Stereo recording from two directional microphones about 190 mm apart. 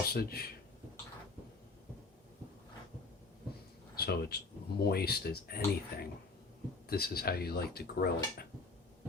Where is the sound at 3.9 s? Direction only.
55° left (ahead or behind).